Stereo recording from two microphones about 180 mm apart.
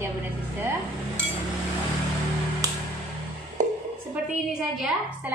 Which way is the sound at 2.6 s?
20° right (ahead or behind).